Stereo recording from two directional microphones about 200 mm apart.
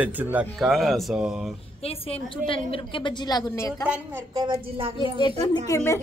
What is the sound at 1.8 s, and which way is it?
A woman's voice, 30° left (ahead or behind).